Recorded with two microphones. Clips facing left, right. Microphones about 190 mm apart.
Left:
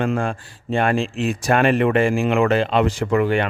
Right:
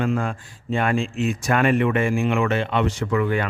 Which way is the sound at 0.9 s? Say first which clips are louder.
Left 1 dB; 65° left (ahead or behind).